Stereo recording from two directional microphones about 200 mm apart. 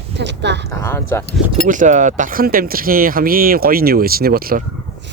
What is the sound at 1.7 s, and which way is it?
Speech, 40° right (ahead or behind).